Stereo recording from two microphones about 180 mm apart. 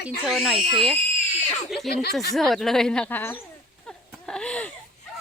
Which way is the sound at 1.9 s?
60° left (ahead or behind).